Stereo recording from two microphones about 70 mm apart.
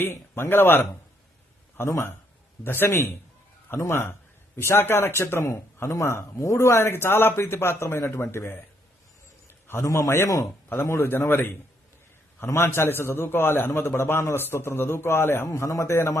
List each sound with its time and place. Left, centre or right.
0.0 s a man's voice: left
9.5 s a sound: left
9.8 s a man's voice: left
12.5 s a man's voice: left
15.4 s a man's voice: left